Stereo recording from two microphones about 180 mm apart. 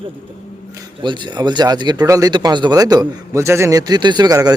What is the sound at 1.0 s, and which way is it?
Speech, 25° right (ahead or behind).